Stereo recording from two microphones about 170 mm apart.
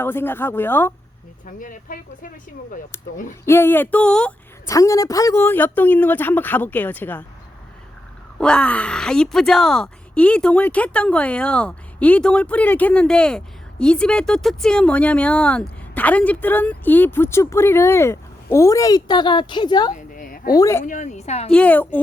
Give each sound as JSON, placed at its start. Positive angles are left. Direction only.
{"t": 0.0, "sound": "speech", "side_deg": 10}
{"t": 1.5, "sound": "a woman's voice", "side_deg": 50}
{"t": 3.4, "sound": "speech", "side_deg": 15}
{"t": 4.7, "sound": "speech", "side_deg": 20}
{"t": 8.4, "sound": "speech", "side_deg": 5}
{"t": 19.9, "sound": "a sound", "side_deg": 55}
{"t": 20.5, "sound": "speech", "side_deg": 20}
{"t": 20.8, "sound": "a woman's voice", "side_deg": 50}
{"t": 21.5, "sound": "speech", "side_deg": 10}